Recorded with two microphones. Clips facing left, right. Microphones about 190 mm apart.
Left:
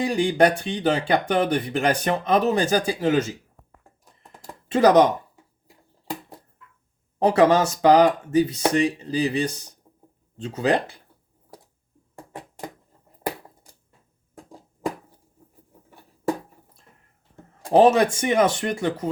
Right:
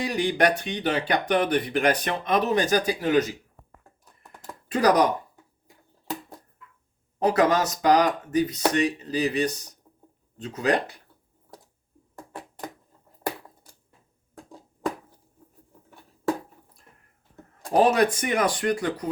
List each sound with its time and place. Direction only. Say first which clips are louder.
0.1 s speech: left 3 dB; 30° left (ahead or behind)
4.0 s typing: even; 20° left (ahead or behind)
7.3 s speech: left 4 dB; 30° left (ahead or behind)
12.1 s a sound: left 1 dB; 15° left (ahead or behind)
17.7 s speech: left 4 dB; 30° left (ahead or behind)